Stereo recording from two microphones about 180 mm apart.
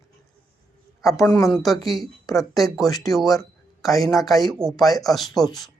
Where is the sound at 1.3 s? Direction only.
Centre (ahead or behind).